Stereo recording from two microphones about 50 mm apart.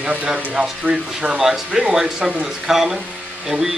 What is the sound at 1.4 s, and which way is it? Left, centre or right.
Speech, centre.